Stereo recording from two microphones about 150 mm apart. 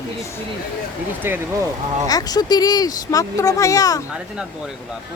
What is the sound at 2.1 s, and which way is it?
Speech, 25° left (ahead or behind).